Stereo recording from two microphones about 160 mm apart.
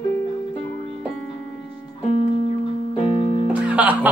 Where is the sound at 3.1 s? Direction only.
40° left (ahead or behind).